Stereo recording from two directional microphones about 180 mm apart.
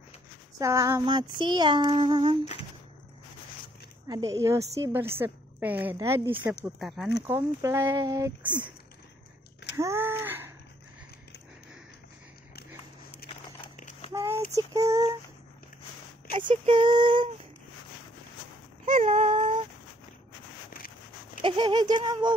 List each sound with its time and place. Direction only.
0.6 s child singing: 15° right (ahead or behind)
4.1 s a woman's voice: 20° right (ahead or behind)
6.8 s speech: centre (ahead or behind)
7.2 s a woman's voice: 15° right (ahead or behind)
9.8 s a sound: 15° right (ahead or behind)
13.2 s a sound: 55° left (ahead or behind)
14.1 s speech: 15° right (ahead or behind)
16.3 s child singing: 30° right (ahead or behind)
18.9 s a sound: 35° right (ahead or behind)
21.4 s child singing: 30° right (ahead or behind)